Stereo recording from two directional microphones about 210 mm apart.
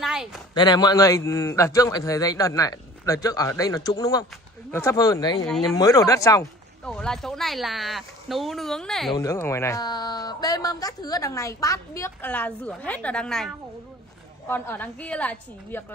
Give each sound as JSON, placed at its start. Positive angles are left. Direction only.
{"t": 0.0, "sound": "a sound", "side_deg": 0}
{"t": 0.6, "sound": "a man's voice", "side_deg": 20}
{"t": 6.8, "sound": "speech", "side_deg": 5}
{"t": 9.1, "sound": "a man's voice", "side_deg": 15}